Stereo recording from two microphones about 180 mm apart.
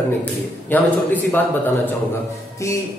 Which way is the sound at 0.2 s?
10° left (ahead or behind).